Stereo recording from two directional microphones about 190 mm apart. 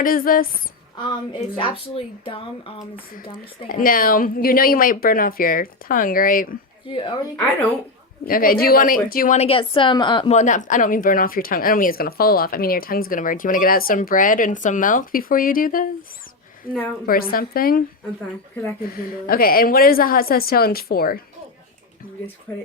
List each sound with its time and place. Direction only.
0.0 s speech: 50° left (ahead or behind)
1.3 s speech: 25° left (ahead or behind)
3.7 s speech: 45° left (ahead or behind)
6.8 s speech: 25° left (ahead or behind)
8.3 s speech: 50° left (ahead or behind); by 10.3 s 25° left (ahead or behind)
10.3 s speech: 40° left (ahead or behind)
22.5 s speech: 10° left (ahead or behind)